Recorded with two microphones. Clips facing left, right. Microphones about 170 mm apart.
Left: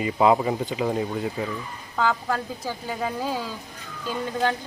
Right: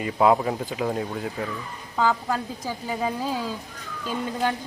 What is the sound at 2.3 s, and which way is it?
Speech, 15° right (ahead or behind).